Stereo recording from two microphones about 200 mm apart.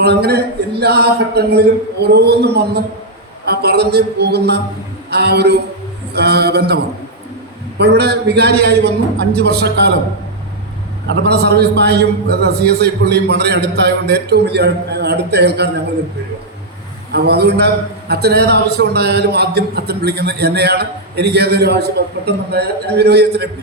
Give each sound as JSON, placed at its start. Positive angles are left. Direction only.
{"t": 0.0, "sound": "a man's voice", "side_deg": -55}
{"t": 7.8, "sound": "a man's voice", "side_deg": -55}
{"t": 11.1, "sound": "a man's voice", "side_deg": -55}
{"t": 17.1, "sound": "a man's voice", "side_deg": -55}